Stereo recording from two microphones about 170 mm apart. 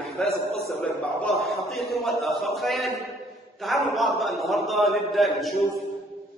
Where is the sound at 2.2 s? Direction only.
Centre (ahead or behind).